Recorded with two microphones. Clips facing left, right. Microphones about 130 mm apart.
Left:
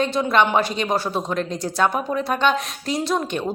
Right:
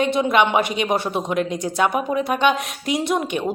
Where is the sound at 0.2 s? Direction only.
20° right (ahead or behind).